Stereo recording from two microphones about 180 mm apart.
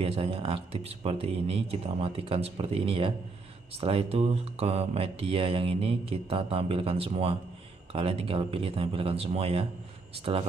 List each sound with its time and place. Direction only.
0.0 s speech: 30° right (ahead or behind)